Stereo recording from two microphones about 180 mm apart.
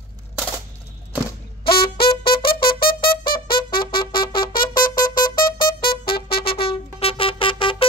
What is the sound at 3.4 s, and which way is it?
Trumpet, 55° left (ahead or behind).